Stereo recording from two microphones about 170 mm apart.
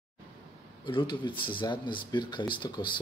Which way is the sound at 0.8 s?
25° left (ahead or behind).